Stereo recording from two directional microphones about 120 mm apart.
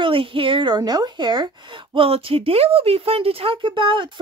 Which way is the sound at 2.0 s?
50° right (ahead or behind).